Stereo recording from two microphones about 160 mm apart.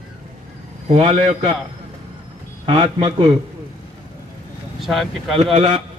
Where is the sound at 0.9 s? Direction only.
35° right (ahead or behind).